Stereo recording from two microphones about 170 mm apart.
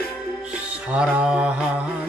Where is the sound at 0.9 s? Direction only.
5° right (ahead or behind).